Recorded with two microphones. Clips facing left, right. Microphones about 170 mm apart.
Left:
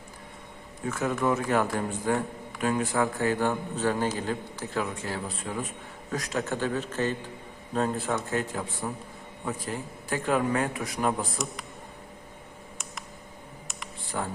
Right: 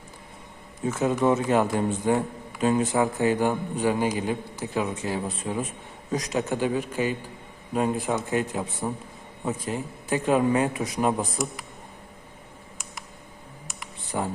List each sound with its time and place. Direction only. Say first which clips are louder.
0.9 s a man's voice: right 4 dB; 20° right (ahead or behind)
14.1 s a man's voice: right 4 dB; 20° right (ahead or behind)